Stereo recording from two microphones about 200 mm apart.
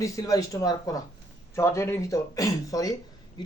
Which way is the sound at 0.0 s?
15° left (ahead or behind).